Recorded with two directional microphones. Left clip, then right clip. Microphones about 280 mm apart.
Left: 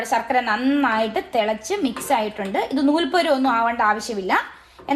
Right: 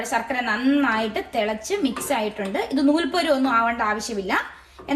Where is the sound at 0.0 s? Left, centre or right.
Left.